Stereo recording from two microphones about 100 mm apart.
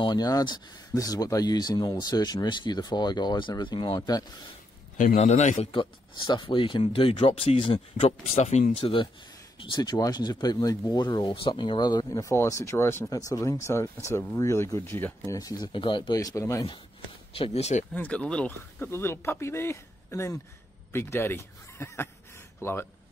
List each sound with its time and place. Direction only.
0.0 s speech: 40° left (ahead or behind)
5.8 s speech: 55° left (ahead or behind)
6.8 s speech: 70° left (ahead or behind)
9.8 s speech: 40° left (ahead or behind); by 13.1 s 25° left (ahead or behind)
13.1 s speech: 35° left (ahead or behind)
15.3 s speech: 40° left (ahead or behind)
16.2 s speech: 35° left (ahead or behind)
17.3 s speech: 80° left
17.9 s speech: 15° left (ahead or behind)
18.9 s speech: 25° left (ahead or behind)